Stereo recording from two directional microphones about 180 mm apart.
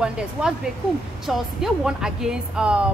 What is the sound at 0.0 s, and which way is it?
A woman's voice, 5° right (ahead or behind).